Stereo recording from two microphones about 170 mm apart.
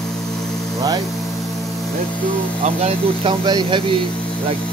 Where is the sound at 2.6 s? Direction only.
35° right (ahead or behind).